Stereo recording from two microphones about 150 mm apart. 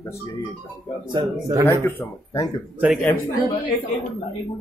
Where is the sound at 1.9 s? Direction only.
15° left (ahead or behind).